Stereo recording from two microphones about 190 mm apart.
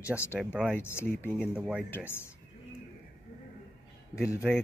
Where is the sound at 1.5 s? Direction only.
5° right (ahead or behind).